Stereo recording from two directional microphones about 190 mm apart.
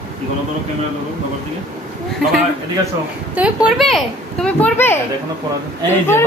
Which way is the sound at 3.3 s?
5° right (ahead or behind).